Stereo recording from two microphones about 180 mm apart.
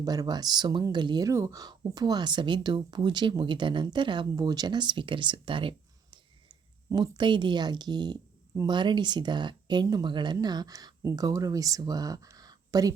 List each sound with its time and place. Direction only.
0.0 s speech: 20° right (ahead or behind)